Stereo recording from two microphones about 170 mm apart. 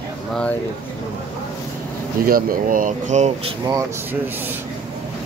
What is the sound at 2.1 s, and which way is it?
Speech, 55° right (ahead or behind).